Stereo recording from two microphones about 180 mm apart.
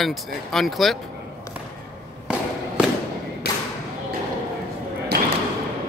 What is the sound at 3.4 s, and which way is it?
Thump, 60° left (ahead or behind).